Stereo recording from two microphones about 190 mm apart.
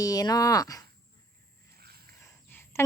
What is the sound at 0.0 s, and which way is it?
Speech, 20° left (ahead or behind).